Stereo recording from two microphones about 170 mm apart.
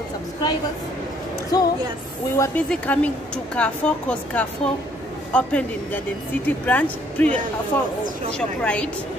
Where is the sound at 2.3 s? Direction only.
20° left (ahead or behind).